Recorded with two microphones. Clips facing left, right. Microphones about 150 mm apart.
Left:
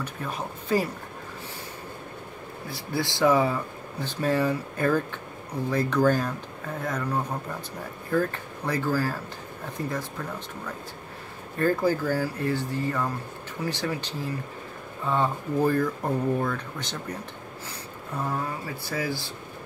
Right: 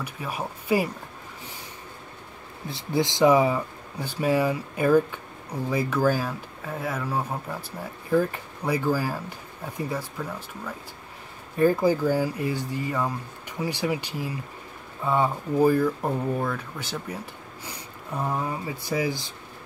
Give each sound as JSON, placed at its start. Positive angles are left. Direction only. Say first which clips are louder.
{"t": 0.0, "sound": "speech", "louder": "right 1 dB", "side_deg": -10}
{"t": 2.7, "sound": "speech", "louder": "right 4 dB", "side_deg": -20}
{"t": 11.5, "sound": "speech", "louder": "right 3 dB", "side_deg": -10}